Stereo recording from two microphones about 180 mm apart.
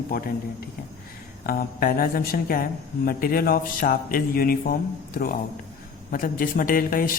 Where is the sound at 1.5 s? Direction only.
55° left (ahead or behind).